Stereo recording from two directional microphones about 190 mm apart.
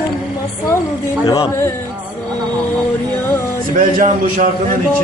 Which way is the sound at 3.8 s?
45° right (ahead or behind).